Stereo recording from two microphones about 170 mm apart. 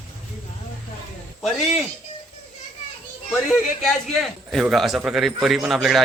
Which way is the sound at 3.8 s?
Centre (ahead or behind).